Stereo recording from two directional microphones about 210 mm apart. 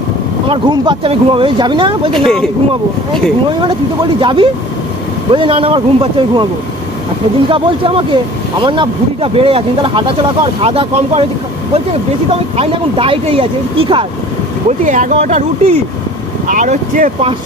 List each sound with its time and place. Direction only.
0.5 s speech: 25° right (ahead or behind)
2.1 s speech: centre (ahead or behind)
4.2 s speech: 25° right (ahead or behind)
7.4 s speech: 25° right (ahead or behind)
12.5 s speech: 25° right (ahead or behind)